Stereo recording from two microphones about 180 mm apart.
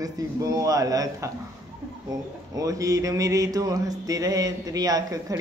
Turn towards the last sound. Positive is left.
turn(degrees=-20)  # may be behind; listen again after turning